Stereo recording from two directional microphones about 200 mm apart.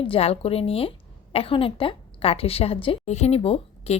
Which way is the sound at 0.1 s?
30° left (ahead or behind).